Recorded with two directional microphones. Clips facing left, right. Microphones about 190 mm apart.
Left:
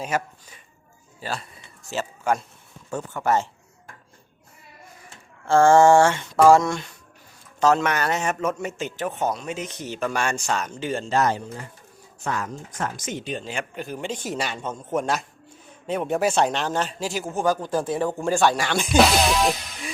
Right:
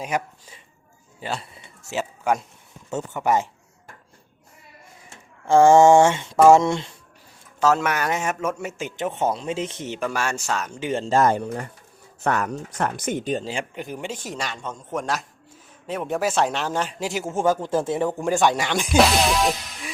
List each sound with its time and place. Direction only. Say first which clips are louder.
1.2 s speech: right 1 dB; 20° right (ahead or behind)
2.9 s a man's voice: right 1 dB; 20° right (ahead or behind)
5.5 s speech: right 2 dB; 15° right (ahead or behind)
7.6 s a man's voice: left 1 dB; 5° right (ahead or behind)
9.0 s speech: right 3 dB; 25° right (ahead or behind)
10.0 s a man's voice: left 1 dB; 5° right (ahead or behind)
10.8 s a man's voice: right 2 dB; 15° right (ahead or behind)
11.0 s speech: right 4 dB; 45° right (ahead or behind)
13.7 s a man's voice: left 1 dB; 15° right (ahead or behind)
14.2 s a man's voice: left 3 dB; 5° left (ahead or behind); by 18.9 s 20° right (ahead or behind)
18.9 s music: even; centre (ahead or behind)